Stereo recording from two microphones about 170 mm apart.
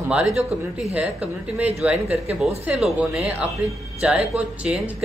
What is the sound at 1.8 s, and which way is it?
A man's voice, 10° right (ahead or behind).